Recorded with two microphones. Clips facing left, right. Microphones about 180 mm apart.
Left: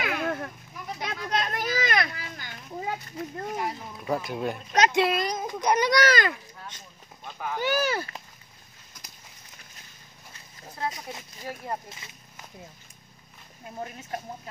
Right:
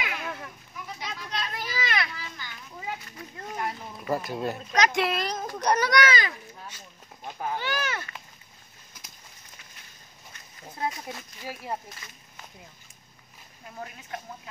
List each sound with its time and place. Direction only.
0.0 s a sound: 55° left (ahead or behind)
0.9 s children playing: 55° left (ahead or behind)
3.5 s speech: centre (ahead or behind)
4.8 s a child's voice: 25° left (ahead or behind)
5.3 s speech: 10° left (ahead or behind)
5.9 s speech: 30° left (ahead or behind)
7.2 s speech: 30° right (ahead or behind)
7.6 s speech: 35° left (ahead or behind)
10.9 s a child's voice: 20° left (ahead or behind)
11.4 s speech: 5° right (ahead or behind)
13.7 s speech: 35° left (ahead or behind)